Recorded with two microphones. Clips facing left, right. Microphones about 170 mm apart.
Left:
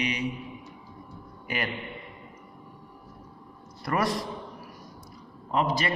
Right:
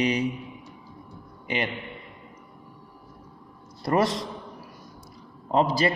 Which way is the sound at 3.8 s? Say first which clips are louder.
Right 4 dB; 25° right (ahead or behind).